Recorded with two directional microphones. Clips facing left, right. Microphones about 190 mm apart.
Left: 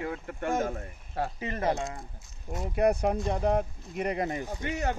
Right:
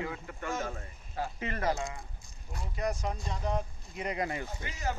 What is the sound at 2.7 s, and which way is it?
Speech, 60° left (ahead or behind).